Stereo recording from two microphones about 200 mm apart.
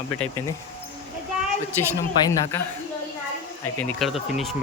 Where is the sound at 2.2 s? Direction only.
20° left (ahead or behind).